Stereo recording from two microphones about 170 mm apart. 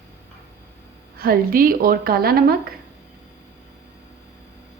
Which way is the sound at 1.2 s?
60° right (ahead or behind).